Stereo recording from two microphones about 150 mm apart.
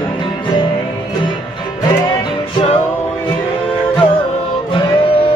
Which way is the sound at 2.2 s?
40° left (ahead or behind).